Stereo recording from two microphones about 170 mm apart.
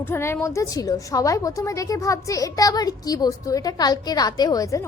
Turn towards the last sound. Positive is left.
turn(degrees=20)  # may be behind; listen again after turning